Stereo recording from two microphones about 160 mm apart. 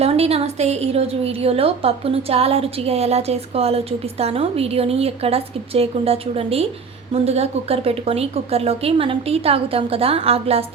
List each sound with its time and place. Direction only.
0.0 s a woman's voice: 40° right (ahead or behind)